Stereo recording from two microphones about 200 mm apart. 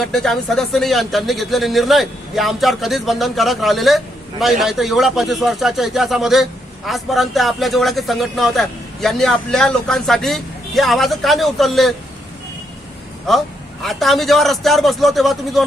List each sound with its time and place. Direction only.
0.0 s speech: centre (ahead or behind)
13.3 s speech: centre (ahead or behind)